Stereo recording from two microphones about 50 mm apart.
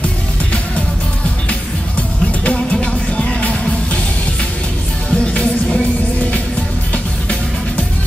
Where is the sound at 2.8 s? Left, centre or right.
Left.